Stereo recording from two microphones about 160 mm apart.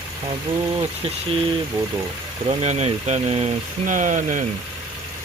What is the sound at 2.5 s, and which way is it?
Speech, 45° right (ahead or behind).